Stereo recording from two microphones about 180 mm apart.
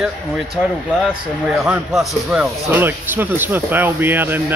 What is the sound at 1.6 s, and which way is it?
Speech, 5° right (ahead or behind).